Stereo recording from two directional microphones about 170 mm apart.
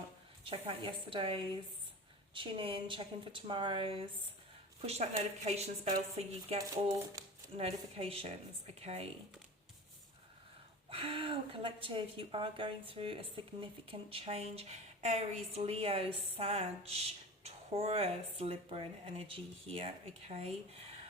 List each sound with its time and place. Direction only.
0.5 s a woman's voice: 30° right (ahead or behind)
10.8 s a woman's voice: 30° right (ahead or behind)